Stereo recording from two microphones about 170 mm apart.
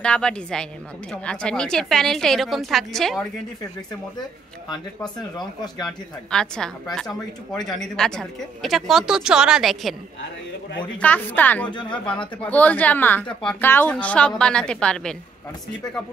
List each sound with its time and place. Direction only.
0.0 s a woman's voice: 5° left (ahead or behind)
4.6 s speech: 25° left (ahead or behind)
5.9 s a woman's voice: 5° left (ahead or behind)